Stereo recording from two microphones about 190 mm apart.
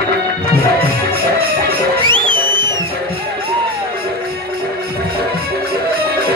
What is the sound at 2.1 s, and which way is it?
Music, 25° right (ahead or behind).